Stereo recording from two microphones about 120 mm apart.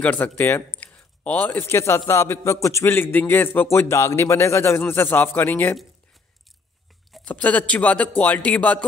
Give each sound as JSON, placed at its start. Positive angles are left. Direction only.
{"t": 0.0, "sound": "speech", "side_deg": 15}
{"t": 0.7, "sound": "a sound", "side_deg": 10}
{"t": 2.0, "sound": "a man's voice", "side_deg": 20}
{"t": 7.2, "sound": "speech", "side_deg": 15}